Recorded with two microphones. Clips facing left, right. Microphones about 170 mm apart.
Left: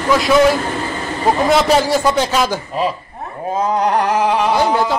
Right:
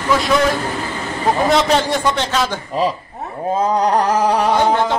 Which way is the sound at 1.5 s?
5° left (ahead or behind).